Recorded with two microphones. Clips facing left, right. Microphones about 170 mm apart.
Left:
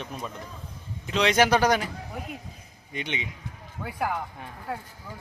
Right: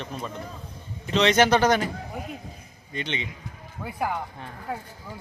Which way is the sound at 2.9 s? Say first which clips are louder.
Right 2 dB; 15° left (ahead or behind).